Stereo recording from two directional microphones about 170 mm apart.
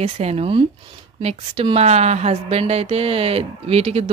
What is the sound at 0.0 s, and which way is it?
A woman's voice, 40° right (ahead or behind).